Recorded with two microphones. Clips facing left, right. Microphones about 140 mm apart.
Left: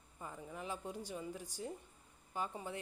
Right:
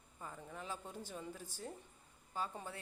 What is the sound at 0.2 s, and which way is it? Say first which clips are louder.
Speech: left 2 dB; 15° left (ahead or behind).